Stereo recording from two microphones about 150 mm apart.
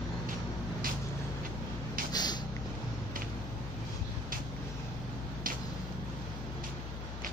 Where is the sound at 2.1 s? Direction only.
30° left (ahead or behind).